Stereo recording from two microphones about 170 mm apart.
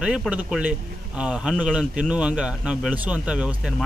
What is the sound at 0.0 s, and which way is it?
A man's voice, 5° right (ahead or behind).